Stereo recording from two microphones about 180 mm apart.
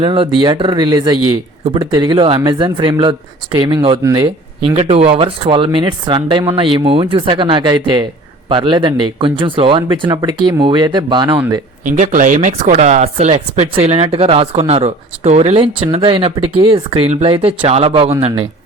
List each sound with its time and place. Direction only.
0.0 s speech: 25° right (ahead or behind)
11.9 s speech: 45° right (ahead or behind)